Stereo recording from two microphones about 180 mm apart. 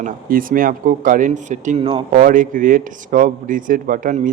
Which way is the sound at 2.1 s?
50° right (ahead or behind).